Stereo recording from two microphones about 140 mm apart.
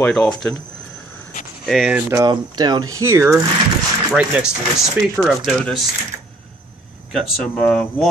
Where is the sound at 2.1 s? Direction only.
30° right (ahead or behind).